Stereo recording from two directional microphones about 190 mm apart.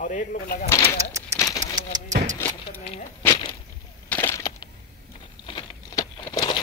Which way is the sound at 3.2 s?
15° left (ahead or behind).